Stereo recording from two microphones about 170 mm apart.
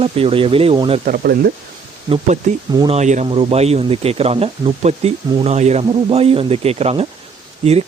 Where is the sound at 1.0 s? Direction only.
55° right (ahead or behind).